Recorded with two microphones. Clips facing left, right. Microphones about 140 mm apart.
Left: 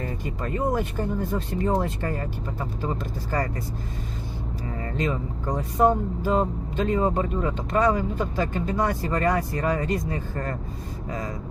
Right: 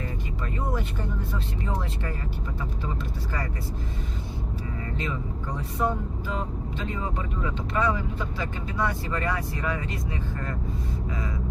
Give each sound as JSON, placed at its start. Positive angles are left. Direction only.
{"t": 0.0, "sound": "speech", "side_deg": 45}
{"t": 4.9, "sound": "speech", "side_deg": 40}